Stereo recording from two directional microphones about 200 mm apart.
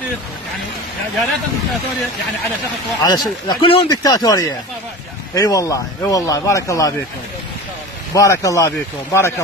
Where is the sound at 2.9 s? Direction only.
20° left (ahead or behind).